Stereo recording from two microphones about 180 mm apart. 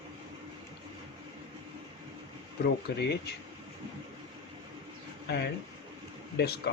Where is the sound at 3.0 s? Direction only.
65° left (ahead or behind).